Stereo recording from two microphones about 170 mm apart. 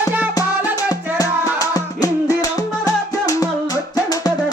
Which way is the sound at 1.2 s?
20° left (ahead or behind).